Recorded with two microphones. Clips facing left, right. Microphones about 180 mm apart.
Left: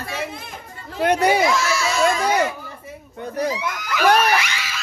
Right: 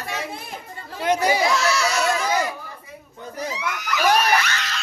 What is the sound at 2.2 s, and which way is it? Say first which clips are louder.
Speech: left 3 dB; 65° left (ahead or behind).